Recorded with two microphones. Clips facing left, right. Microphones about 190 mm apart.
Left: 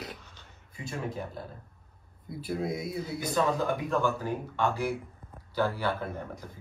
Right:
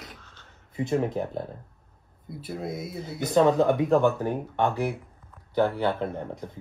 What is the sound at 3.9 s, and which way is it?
Speech, 60° right (ahead or behind).